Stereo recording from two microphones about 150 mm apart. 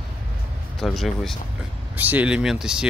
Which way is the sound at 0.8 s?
Centre (ahead or behind).